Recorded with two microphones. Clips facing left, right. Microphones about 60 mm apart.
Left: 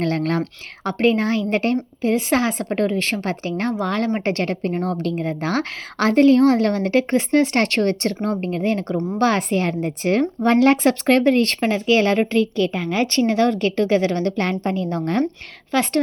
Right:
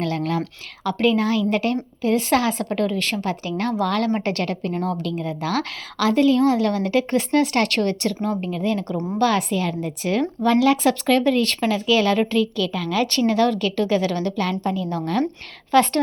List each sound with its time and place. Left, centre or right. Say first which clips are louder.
0.0 s speech: left 3 dB; left
0.9 s a woman's voice: left 1 dB; left
15.7 s a woman's voice: right 4 dB; centre